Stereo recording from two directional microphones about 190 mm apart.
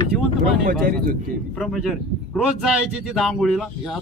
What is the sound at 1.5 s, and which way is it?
Speech, centre (ahead or behind).